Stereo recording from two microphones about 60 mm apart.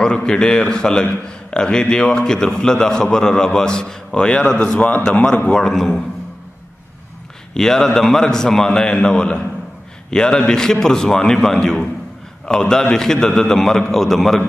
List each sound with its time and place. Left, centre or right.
0.0 s a man's voice: centre
5.5 s a man's voice: centre
7.5 s a man's voice: centre